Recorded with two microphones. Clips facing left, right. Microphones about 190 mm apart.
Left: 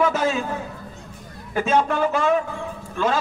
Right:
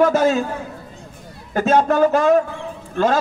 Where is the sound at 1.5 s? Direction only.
45° right (ahead or behind).